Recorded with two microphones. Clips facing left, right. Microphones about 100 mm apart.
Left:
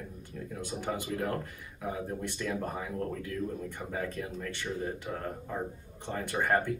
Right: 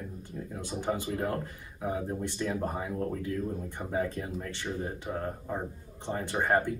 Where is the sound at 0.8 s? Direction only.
20° right (ahead or behind).